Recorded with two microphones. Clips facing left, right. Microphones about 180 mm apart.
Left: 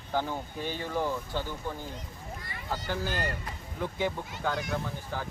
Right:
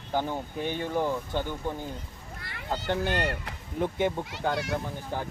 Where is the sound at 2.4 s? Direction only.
70° right (ahead or behind).